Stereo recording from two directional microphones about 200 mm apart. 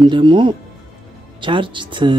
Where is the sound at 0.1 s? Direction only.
25° right (ahead or behind).